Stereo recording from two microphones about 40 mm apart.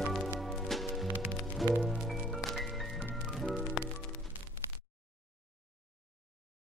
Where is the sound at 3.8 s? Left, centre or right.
Centre.